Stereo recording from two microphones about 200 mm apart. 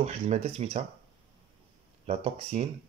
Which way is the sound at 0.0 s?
35° right (ahead or behind).